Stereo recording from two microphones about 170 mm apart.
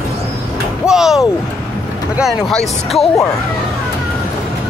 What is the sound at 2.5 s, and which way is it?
Speech, centre (ahead or behind).